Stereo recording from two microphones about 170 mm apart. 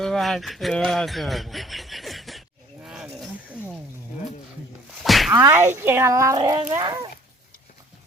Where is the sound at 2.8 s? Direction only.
5° right (ahead or behind).